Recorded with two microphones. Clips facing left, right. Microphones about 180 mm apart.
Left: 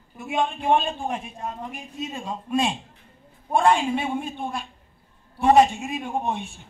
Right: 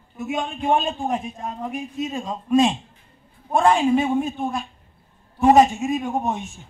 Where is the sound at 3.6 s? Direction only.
40° right (ahead or behind).